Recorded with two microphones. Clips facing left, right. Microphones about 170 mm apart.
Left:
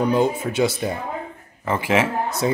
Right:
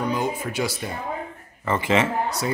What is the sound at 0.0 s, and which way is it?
Speech, 30° left (ahead or behind).